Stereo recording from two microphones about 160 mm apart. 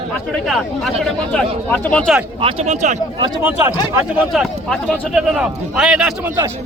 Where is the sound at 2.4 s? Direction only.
35° right (ahead or behind).